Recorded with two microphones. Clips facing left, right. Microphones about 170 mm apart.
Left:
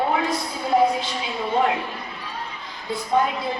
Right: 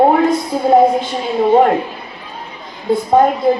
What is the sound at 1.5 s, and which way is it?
Speech, 50° right (ahead or behind).